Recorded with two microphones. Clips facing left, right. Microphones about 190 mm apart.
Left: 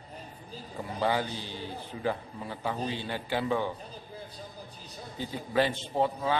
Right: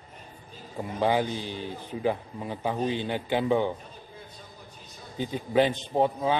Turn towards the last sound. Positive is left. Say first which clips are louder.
# right 3 dB
turn(degrees=-20)  # may be behind; listen again after turning